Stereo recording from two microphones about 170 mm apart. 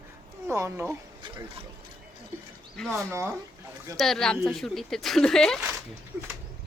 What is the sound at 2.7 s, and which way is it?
Speech, centre (ahead or behind).